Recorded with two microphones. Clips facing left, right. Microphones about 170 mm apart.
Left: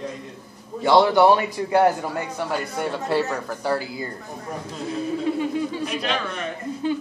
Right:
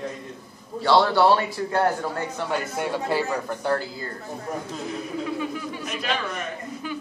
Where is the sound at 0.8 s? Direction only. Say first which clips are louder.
Left 3 dB; 15° left (ahead or behind).